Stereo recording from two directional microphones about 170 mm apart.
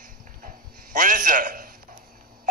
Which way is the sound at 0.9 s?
55° right (ahead or behind).